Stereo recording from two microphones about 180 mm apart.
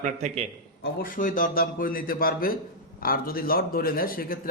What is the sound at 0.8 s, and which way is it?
A man's voice, 50° left (ahead or behind).